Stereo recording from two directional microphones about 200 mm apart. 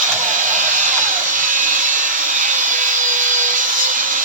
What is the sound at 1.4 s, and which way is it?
Wood, 40° right (ahead or behind).